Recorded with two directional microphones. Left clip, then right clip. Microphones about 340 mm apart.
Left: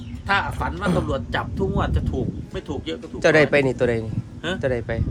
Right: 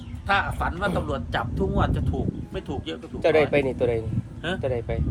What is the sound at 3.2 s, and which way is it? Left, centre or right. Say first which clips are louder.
Speech: left 4 dB; left.